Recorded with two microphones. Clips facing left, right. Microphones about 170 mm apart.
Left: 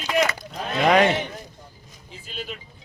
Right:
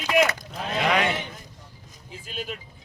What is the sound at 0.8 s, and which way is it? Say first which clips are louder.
Speech: left 6 dB; 40° left (ahead or behind).